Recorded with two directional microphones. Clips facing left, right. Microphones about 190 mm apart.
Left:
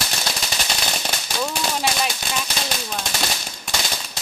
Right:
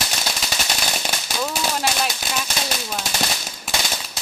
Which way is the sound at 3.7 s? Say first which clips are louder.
Right 1 dB; 5° right (ahead or behind).